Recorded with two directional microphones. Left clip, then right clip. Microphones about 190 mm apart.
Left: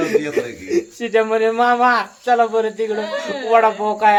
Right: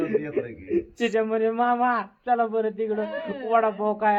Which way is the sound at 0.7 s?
5° right (ahead or behind).